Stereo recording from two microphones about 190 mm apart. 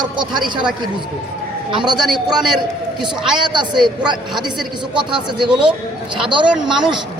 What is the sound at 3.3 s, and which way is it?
Speech, 25° right (ahead or behind).